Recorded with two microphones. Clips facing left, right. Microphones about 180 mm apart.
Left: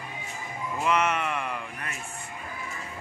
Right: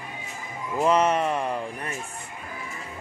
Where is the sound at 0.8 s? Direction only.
35° right (ahead or behind).